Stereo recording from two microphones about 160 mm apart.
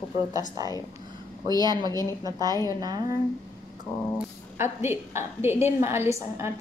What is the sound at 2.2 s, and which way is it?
Speech, 25° right (ahead or behind).